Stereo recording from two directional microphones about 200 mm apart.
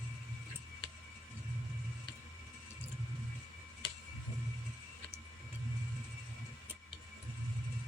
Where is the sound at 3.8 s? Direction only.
20° left (ahead or behind).